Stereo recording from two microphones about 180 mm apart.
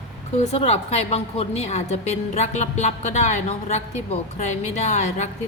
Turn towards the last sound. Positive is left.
turn(degrees=40)  # may be behind; listen again after turning